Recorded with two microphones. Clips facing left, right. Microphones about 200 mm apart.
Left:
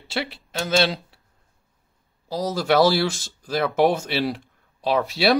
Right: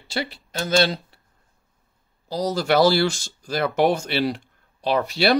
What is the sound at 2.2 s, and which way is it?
Speech, centre (ahead or behind).